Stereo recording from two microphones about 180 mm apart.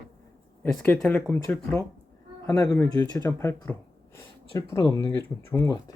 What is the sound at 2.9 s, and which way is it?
Speech, 15° left (ahead or behind).